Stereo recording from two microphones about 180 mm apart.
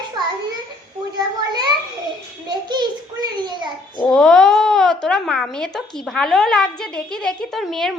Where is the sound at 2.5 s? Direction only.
25° right (ahead or behind).